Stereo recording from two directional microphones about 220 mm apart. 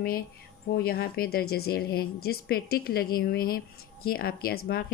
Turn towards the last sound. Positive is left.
turn(degrees=45)  # may be behind; listen again after turning